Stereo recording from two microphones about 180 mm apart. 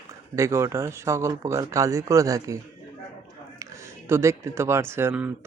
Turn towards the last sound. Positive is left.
turn(degrees=-10)  # may be behind; listen again after turning